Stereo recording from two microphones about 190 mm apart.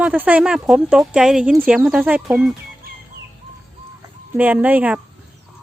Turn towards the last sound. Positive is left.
turn(degrees=-10)  # may be behind; listen again after turning